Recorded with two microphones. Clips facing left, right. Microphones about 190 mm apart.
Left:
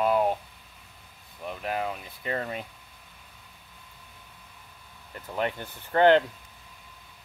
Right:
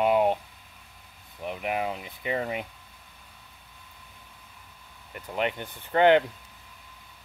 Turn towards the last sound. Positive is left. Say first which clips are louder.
# even
turn(degrees=-15)  # may be behind; listen again after turning